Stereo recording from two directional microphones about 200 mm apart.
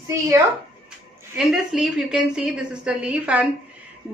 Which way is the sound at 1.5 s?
Centre (ahead or behind).